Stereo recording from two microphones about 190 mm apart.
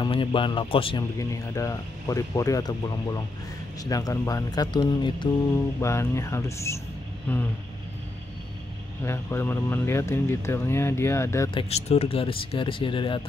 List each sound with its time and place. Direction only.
0.0 s speech: 25° left (ahead or behind)
1.1 s speech: 15° left (ahead or behind)
9.0 s speech: 10° left (ahead or behind)
11.5 s speech: 30° left (ahead or behind)